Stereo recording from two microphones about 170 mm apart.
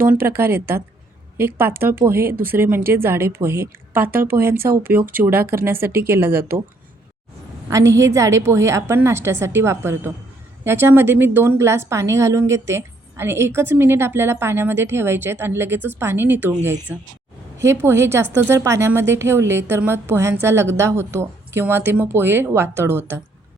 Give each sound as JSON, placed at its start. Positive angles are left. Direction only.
{"t": 0.0, "sound": "a woman's voice", "side_deg": -10}
{"t": 7.7, "sound": "a woman's voice", "side_deg": -20}